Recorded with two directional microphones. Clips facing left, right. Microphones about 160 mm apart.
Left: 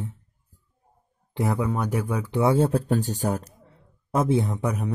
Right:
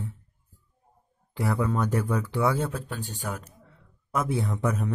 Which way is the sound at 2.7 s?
40° left (ahead or behind).